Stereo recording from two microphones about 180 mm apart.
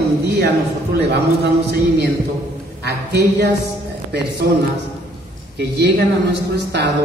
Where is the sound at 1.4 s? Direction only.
65° right (ahead or behind).